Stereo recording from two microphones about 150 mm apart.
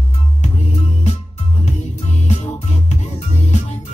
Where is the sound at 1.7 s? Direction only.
50° left (ahead or behind).